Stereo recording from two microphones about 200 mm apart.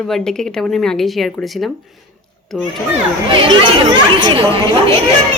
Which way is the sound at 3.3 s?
25° right (ahead or behind).